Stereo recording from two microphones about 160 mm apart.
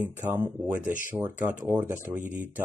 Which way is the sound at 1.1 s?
10° right (ahead or behind).